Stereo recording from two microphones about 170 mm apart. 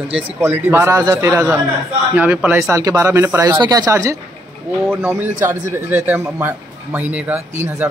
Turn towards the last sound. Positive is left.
turn(degrees=-10)  # may be behind; listen again after turning